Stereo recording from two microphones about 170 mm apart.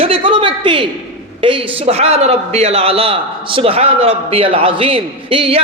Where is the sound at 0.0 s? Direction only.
35° right (ahead or behind).